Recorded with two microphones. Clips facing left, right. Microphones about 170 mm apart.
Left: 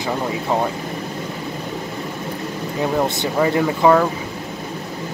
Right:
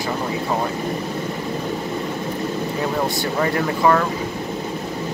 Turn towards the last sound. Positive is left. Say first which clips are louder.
# left 3 dB
turn(degrees=10)  # may be behind; listen again after turning